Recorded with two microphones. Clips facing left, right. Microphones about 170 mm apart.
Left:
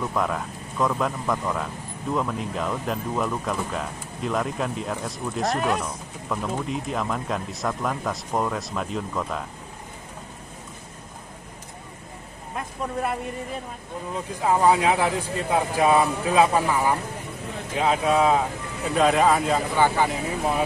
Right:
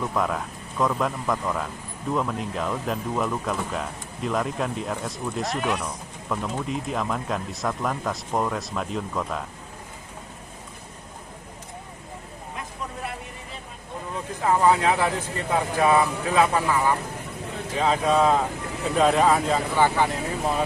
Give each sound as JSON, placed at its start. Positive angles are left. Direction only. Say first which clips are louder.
{"t": 0.0, "sound": "speech", "louder": "even", "side_deg": 0}
{"t": 12.5, "sound": "vehicle", "louder": "left 7 dB", "side_deg": 50}
{"t": 14.4, "sound": "speech", "louder": "even", "side_deg": 15}